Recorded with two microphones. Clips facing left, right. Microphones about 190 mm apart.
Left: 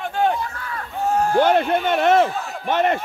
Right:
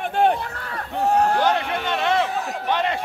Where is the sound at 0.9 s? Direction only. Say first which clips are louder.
Right 2 dB; 65° right (ahead or behind).